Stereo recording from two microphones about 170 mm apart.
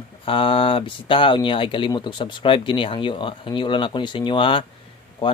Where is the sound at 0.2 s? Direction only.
30° left (ahead or behind).